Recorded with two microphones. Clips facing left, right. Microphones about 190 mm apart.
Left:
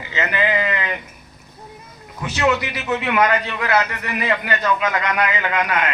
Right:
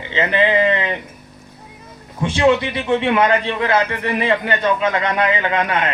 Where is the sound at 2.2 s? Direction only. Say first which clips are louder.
Right 5 dB; 30° right (ahead or behind).